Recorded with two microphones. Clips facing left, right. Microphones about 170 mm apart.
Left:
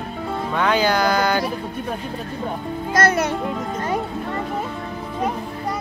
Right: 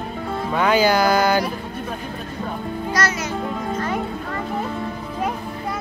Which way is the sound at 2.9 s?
55° left (ahead or behind).